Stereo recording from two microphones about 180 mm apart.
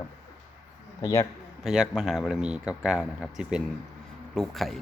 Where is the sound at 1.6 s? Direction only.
5° right (ahead or behind).